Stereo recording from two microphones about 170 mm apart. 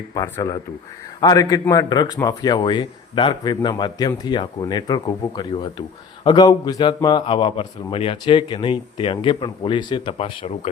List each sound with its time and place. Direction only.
0.1 s a man's voice: 20° left (ahead or behind); by 10.7 s 35° left (ahead or behind)